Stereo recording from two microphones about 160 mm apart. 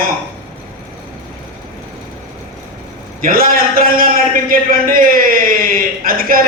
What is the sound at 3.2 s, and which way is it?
A man's voice, 65° right (ahead or behind).